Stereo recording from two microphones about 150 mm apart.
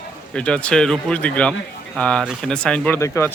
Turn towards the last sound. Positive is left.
turn(degrees=20)  # may be behind; listen again after turning